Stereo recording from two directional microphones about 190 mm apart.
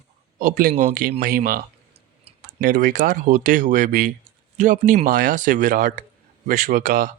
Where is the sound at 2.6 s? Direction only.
45° right (ahead or behind).